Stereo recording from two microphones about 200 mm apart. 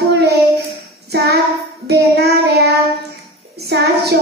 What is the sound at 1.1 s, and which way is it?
Child singing, 55° right (ahead or behind).